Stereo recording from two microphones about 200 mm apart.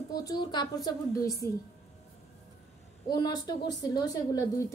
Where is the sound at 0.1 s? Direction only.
20° left (ahead or behind).